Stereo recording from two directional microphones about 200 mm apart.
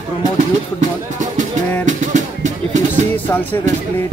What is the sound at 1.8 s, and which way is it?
Music, 40° right (ahead or behind).